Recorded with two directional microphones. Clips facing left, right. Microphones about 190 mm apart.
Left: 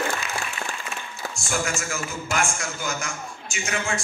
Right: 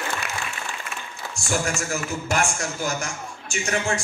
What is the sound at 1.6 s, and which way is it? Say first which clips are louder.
A man's voice: right 2 dB; 40° right (ahead or behind).